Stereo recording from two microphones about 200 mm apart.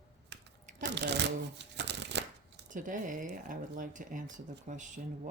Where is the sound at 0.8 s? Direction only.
60° right (ahead or behind).